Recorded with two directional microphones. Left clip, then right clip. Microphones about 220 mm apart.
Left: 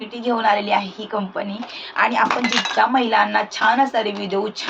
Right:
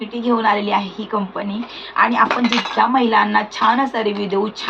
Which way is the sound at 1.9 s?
5° left (ahead or behind).